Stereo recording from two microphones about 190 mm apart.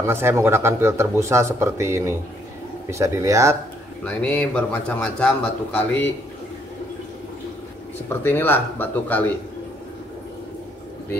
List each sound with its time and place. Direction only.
0.0 s speech: 15° right (ahead or behind)
4.0 s a man's voice: 5° left (ahead or behind)
8.1 s a man's voice: 10° left (ahead or behind)